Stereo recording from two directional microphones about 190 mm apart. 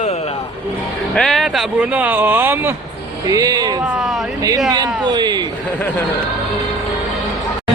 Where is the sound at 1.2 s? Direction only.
Centre (ahead or behind); by 5.3 s 20° right (ahead or behind).